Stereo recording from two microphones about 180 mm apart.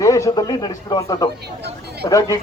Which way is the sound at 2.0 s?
20° left (ahead or behind).